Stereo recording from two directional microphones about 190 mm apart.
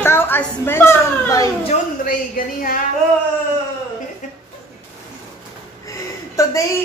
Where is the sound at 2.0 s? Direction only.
50° left (ahead or behind).